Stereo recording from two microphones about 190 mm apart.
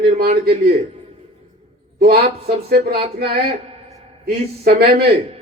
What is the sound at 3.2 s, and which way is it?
A man's voice, 55° right (ahead or behind).